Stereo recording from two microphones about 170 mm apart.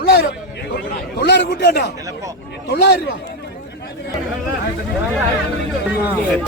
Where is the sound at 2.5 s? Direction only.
70° left (ahead or behind).